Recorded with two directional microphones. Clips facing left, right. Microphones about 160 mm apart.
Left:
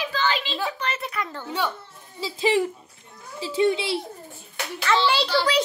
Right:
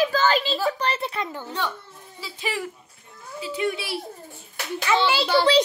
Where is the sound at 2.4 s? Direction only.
25° left (ahead or behind).